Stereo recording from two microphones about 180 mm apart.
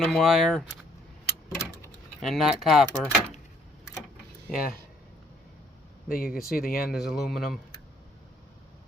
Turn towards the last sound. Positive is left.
turn(degrees=0)  # may be behind; listen again after turning